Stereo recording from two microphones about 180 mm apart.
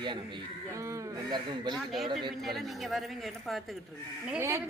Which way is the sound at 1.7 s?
Centre (ahead or behind).